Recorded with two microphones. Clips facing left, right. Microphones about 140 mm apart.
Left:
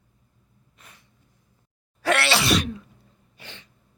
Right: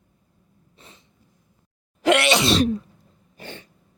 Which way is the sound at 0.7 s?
25° right (ahead or behind).